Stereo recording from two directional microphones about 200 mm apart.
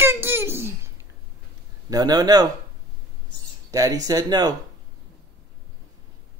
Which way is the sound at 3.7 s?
15° right (ahead or behind).